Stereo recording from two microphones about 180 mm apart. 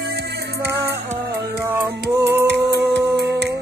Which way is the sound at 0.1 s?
65° right (ahead or behind).